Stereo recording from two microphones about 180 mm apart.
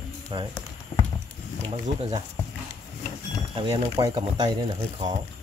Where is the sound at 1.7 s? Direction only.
35° right (ahead or behind).